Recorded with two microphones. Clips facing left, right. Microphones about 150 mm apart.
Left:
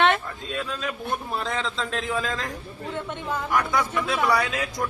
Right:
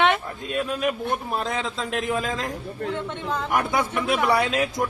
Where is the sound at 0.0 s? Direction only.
15° right (ahead or behind).